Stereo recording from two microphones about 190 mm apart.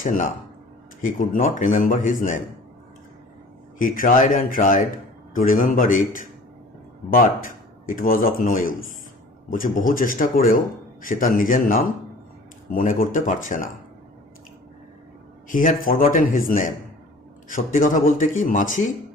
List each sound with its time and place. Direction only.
0.0 s speech: 45° left (ahead or behind)
3.8 s speech: 45° left (ahead or behind)
15.4 s speech: 45° left (ahead or behind)